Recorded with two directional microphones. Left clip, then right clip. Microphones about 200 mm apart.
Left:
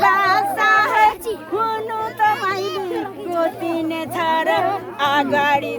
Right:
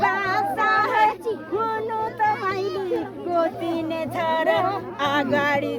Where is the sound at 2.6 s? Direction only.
50° left (ahead or behind).